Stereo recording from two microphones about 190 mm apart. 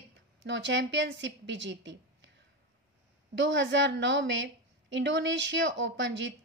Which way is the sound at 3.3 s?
75° right (ahead or behind).